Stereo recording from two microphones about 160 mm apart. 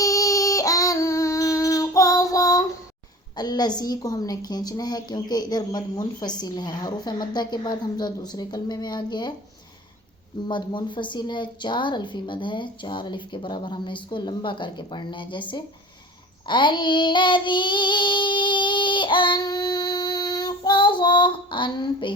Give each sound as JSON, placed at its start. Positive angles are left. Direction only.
{"t": 0.0, "sound": "child singing", "side_deg": 20}
{"t": 3.3, "sound": "a woman's voice", "side_deg": 25}
{"t": 10.5, "sound": "a woman's voice", "side_deg": 30}
{"t": 16.5, "sound": "child singing", "side_deg": 30}